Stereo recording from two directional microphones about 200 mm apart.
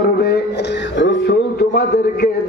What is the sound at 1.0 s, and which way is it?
A man's voice, 60° left (ahead or behind).